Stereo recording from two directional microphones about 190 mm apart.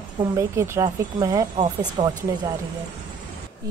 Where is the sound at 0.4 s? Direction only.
15° right (ahead or behind).